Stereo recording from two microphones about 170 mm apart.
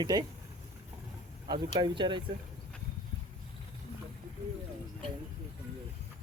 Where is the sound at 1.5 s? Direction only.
25° right (ahead or behind).